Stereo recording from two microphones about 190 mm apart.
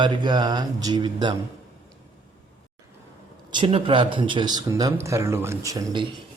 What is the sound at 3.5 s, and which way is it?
A man's voice, 30° right (ahead or behind).